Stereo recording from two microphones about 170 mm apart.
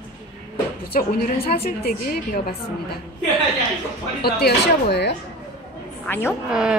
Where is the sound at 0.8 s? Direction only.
65° left (ahead or behind).